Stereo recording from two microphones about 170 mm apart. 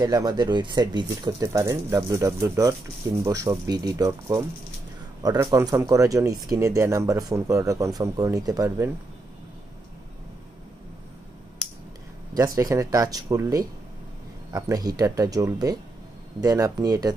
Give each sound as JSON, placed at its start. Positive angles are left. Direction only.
{"t": 0.0, "sound": "speech", "side_deg": -25}
{"t": 12.5, "sound": "speech", "side_deg": -20}